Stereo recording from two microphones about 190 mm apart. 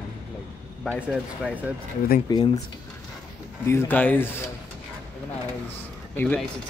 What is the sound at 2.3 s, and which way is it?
Speech, 20° left (ahead or behind).